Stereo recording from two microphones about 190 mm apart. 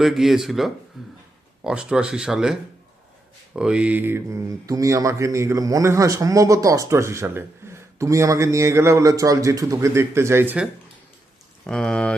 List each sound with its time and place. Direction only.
0.0 s speech: centre (ahead or behind)
0.9 s a sound: centre (ahead or behind)
1.6 s speech: 5° right (ahead or behind)
11.6 s speech: 5° left (ahead or behind)